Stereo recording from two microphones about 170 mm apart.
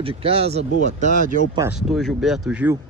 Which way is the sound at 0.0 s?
35° right (ahead or behind).